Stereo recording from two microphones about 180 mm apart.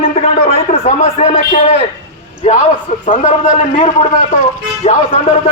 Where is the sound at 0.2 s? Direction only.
35° left (ahead or behind).